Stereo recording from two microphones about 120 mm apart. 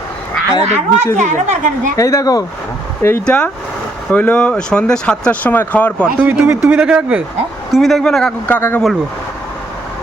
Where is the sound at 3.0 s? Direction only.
15° left (ahead or behind).